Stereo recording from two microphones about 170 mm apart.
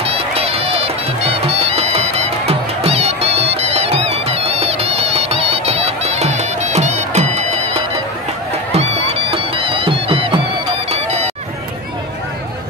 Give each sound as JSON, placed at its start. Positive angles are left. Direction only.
{"t": 0.0, "sound": "music", "side_deg": -35}
{"t": 8.7, "sound": "music", "side_deg": -35}
{"t": 10.9, "sound": "run", "side_deg": -40}